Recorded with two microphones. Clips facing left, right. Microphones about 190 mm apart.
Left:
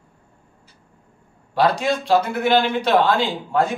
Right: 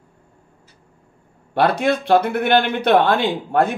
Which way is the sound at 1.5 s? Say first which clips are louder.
Right 2 dB; 60° right (ahead or behind).